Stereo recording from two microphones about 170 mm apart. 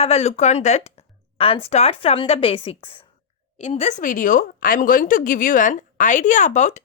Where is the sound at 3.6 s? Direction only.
40° left (ahead or behind).